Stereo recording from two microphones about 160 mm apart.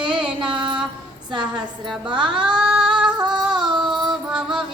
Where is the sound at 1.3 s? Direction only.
30° right (ahead or behind).